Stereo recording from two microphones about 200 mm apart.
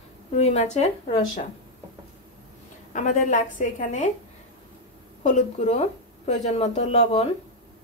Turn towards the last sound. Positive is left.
turn(degrees=30)  # may be behind; listen again after turning